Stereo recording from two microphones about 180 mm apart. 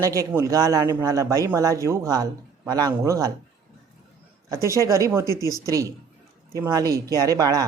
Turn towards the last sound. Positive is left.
turn(degrees=-20)  # may be behind; listen again after turning